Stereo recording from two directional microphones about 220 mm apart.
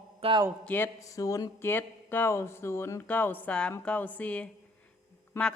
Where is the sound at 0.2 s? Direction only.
25° right (ahead or behind).